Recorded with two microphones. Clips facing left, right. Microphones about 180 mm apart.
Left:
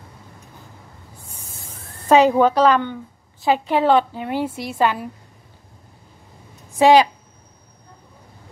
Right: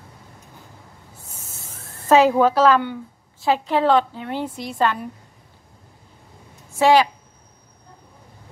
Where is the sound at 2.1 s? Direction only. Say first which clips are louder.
Left 1 dB; centre (ahead or behind).